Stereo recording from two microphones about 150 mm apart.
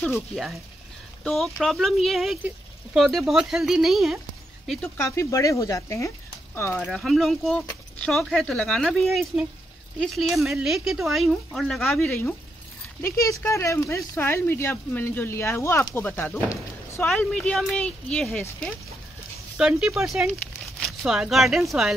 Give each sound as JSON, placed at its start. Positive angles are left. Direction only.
{"t": 1.2, "sound": "speech", "side_deg": 0}
{"t": 4.9, "sound": "speech", "side_deg": 20}
{"t": 6.8, "sound": "speech", "side_deg": 5}
{"t": 19.5, "sound": "speech", "side_deg": -5}